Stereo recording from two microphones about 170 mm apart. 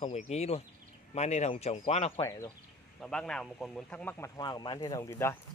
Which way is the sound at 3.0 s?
5° left (ahead or behind).